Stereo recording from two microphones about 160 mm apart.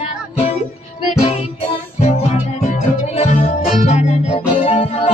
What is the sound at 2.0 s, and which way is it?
Music, 40° left (ahead or behind).